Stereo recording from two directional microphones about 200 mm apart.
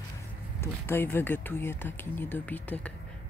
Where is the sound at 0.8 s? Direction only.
10° left (ahead or behind).